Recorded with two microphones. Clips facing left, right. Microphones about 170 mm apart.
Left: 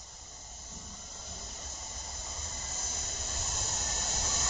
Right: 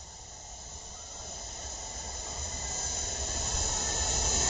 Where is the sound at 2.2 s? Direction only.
25° right (ahead or behind).